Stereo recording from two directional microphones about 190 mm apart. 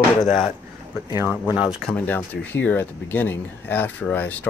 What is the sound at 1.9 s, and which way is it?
Speech, 10° left (ahead or behind).